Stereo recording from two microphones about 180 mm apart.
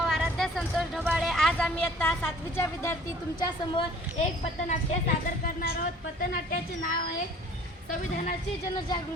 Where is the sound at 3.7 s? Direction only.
30° left (ahead or behind).